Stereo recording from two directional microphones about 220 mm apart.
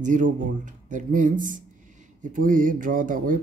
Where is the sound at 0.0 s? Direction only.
35° right (ahead or behind).